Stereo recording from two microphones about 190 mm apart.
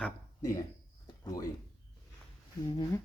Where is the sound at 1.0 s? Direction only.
20° left (ahead or behind).